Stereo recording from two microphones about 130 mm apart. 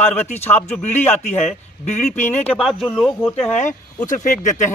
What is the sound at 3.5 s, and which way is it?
Speech, 70° left (ahead or behind).